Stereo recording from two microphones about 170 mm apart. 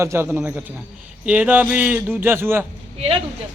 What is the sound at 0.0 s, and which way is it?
Speech, 15° right (ahead or behind).